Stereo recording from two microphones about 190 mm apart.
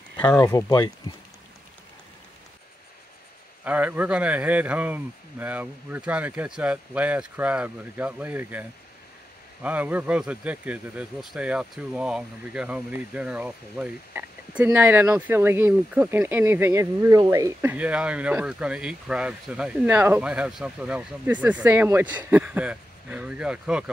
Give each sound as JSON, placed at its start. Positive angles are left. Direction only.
{"t": 0.2, "sound": "speech", "side_deg": 10}
{"t": 3.6, "sound": "speech", "side_deg": -10}